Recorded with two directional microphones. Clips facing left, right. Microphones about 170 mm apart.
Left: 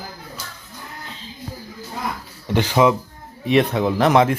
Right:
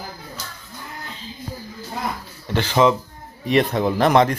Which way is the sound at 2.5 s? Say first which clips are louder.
Left 1 dB; 15° left (ahead or behind).